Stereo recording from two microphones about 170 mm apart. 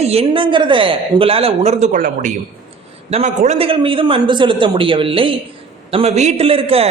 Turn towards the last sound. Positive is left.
turn(degrees=-35)  # may be behind; listen again after turning